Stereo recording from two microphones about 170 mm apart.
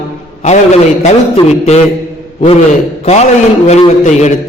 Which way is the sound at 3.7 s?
40° left (ahead or behind).